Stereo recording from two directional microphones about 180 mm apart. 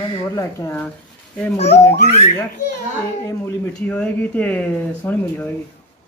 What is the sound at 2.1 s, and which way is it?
Speech, 40° left (ahead or behind).